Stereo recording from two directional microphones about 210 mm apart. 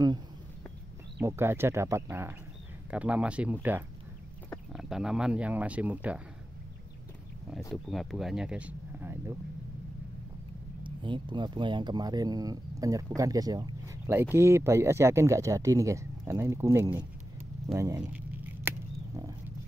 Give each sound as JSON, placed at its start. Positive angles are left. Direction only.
{"t": 1.2, "sound": "speech", "side_deg": -10}
{"t": 7.7, "sound": "speech", "side_deg": 0}
{"t": 10.8, "sound": "speech", "side_deg": -25}
{"t": 18.0, "sound": "a sound", "side_deg": -5}